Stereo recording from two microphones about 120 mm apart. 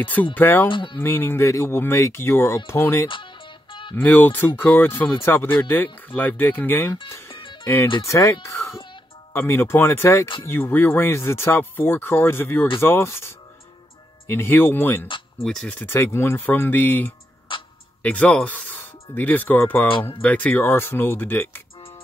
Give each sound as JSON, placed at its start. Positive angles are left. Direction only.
{"t": 0.0, "sound": "speech", "side_deg": 15}
{"t": 0.7, "sound": "speech", "side_deg": 45}
{"t": 1.0, "sound": "speech", "side_deg": 20}
{"t": 7.2, "sound": "music", "side_deg": 45}
{"t": 7.6, "sound": "speech", "side_deg": 20}
{"t": 15.0, "sound": "a sound", "side_deg": 45}
{"t": 15.4, "sound": "speech", "side_deg": 10}
{"t": 17.5, "sound": "music", "side_deg": 45}
{"t": 18.0, "sound": "speech", "side_deg": 10}